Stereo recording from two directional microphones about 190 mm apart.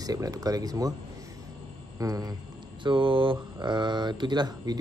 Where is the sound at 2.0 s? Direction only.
20° right (ahead or behind).